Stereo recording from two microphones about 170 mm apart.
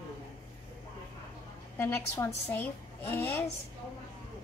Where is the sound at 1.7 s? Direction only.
10° left (ahead or behind).